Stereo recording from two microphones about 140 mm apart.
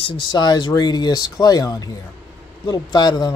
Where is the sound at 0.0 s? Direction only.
35° left (ahead or behind).